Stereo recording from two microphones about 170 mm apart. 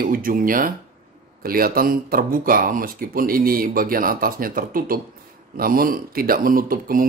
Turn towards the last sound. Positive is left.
turn(degrees=-55)  # may be behind; listen again after turning